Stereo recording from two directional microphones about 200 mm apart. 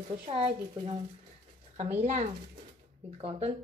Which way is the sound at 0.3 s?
30° right (ahead or behind).